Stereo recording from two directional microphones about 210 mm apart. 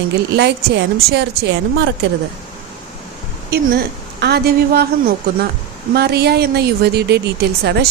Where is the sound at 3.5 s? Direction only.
45° right (ahead or behind).